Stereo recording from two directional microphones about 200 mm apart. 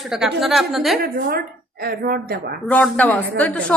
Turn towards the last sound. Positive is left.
turn(degrees=5)  # may be behind; listen again after turning